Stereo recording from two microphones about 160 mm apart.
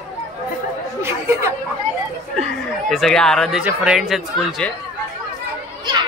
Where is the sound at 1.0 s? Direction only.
15° right (ahead or behind).